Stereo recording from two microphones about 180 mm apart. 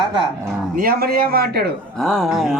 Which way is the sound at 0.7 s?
55° right (ahead or behind).